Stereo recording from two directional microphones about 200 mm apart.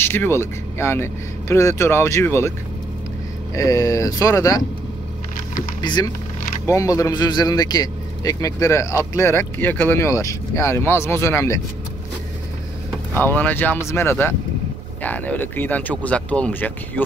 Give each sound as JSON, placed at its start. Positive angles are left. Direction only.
{"t": 0.0, "sound": "a man's voice", "side_deg": 10}
{"t": 3.5, "sound": "a man's voice", "side_deg": 15}
{"t": 5.8, "sound": "a man's voice", "side_deg": 20}
{"t": 13.1, "sound": "a man's voice", "side_deg": 10}